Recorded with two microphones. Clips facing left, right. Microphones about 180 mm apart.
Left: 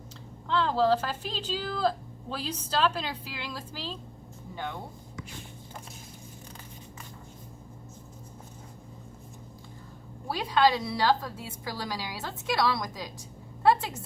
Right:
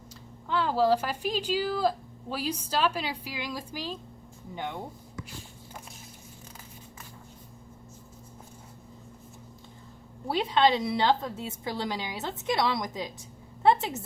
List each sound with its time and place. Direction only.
0.4 s speech: 10° right (ahead or behind)
10.2 s a woman's voice: 20° right (ahead or behind)